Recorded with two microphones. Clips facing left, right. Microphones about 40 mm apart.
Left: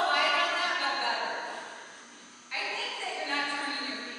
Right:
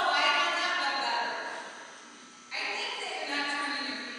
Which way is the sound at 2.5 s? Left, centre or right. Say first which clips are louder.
Left 1 dB; left.